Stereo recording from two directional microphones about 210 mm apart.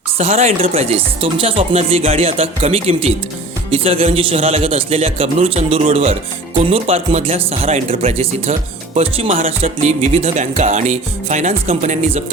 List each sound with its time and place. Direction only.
0.2 s speech: 30° right (ahead or behind)